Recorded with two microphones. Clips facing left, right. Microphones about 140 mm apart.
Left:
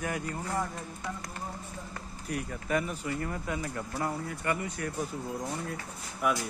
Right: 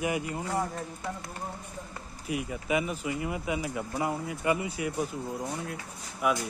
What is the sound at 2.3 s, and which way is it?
Speech, 10° right (ahead or behind).